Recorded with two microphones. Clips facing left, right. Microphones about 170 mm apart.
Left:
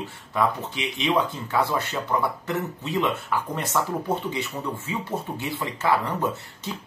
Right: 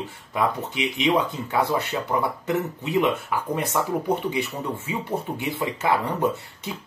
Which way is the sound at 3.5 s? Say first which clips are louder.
Right 5 dB; 15° right (ahead or behind).